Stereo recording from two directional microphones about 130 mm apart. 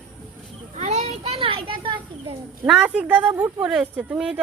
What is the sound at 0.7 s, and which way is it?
A child's voice, 55° right (ahead or behind).